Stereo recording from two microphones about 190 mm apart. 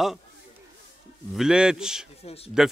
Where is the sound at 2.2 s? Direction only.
30° left (ahead or behind).